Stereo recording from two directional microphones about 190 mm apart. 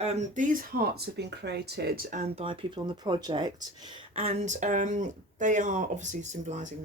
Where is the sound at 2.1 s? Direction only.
35° right (ahead or behind).